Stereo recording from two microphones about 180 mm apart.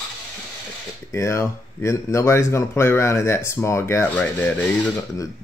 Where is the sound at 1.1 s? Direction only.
15° left (ahead or behind).